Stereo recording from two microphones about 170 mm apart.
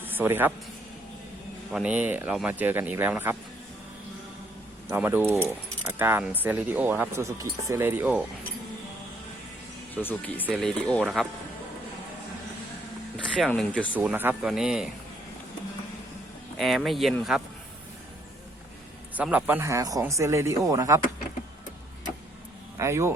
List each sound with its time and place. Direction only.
0.0 s a man's voice: 10° right (ahead or behind)
1.7 s speech: 5° right (ahead or behind)
4.9 s speech: 10° right (ahead or behind)
9.9 s speech: 10° left (ahead or behind)
13.1 s speech: 5° left (ahead or behind)
13.9 s speech: 10° right (ahead or behind)
16.6 s speech: centre (ahead or behind)
19.1 s speech: 10° right (ahead or behind)
22.8 s speech: 15° right (ahead or behind)